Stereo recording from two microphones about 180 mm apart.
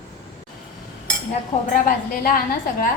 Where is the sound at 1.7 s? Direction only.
50° left (ahead or behind).